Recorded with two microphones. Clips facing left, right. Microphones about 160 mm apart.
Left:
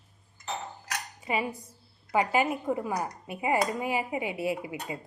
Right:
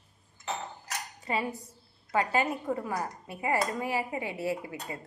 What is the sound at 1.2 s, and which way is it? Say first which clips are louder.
Cutlery: left 1 dB; 15° left (ahead or behind).